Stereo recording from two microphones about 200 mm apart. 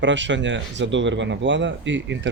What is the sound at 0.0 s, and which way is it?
Speech, 65° right (ahead or behind).